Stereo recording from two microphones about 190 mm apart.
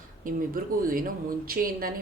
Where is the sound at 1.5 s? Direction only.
50° right (ahead or behind).